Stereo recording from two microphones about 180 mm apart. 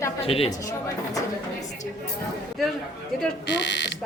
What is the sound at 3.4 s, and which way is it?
Speech, 85° left.